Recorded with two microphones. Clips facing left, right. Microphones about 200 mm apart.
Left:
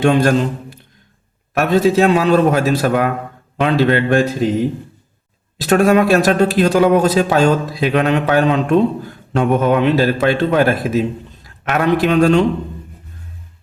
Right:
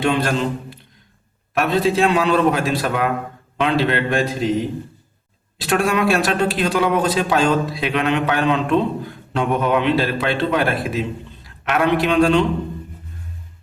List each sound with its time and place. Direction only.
0.0 s a man's voice: 45° left (ahead or behind)
5.5 s a man's voice: 40° left (ahead or behind)